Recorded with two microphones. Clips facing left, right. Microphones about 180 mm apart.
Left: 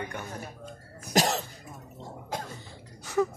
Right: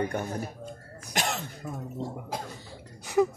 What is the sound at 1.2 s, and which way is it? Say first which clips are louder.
Cough: left 5 dB; 40° left (ahead or behind).